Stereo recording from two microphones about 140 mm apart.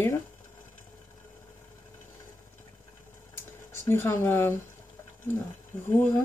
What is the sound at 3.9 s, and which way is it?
Speech, 15° left (ahead or behind).